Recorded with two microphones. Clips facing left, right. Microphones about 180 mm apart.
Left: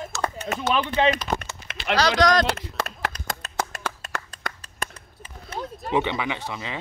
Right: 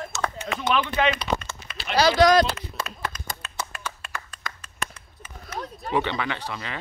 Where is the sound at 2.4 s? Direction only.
85° left.